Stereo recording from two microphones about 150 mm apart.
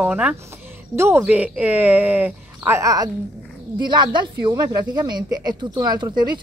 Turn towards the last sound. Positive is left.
turn(degrees=-30)  # may be behind; listen again after turning